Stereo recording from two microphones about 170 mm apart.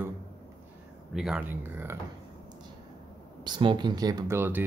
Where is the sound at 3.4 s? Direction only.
25° right (ahead or behind).